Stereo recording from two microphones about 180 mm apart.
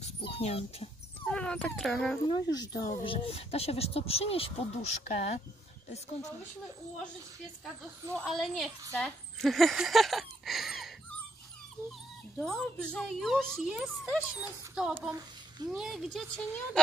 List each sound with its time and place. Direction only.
0.0 s speech: 35° left (ahead or behind)
1.2 s speech: 5° left (ahead or behind)
2.2 s speech: 20° left (ahead or behind)
8.2 s a woman's voice: centre (ahead or behind)
12.4 s a woman's voice: 5° left (ahead or behind)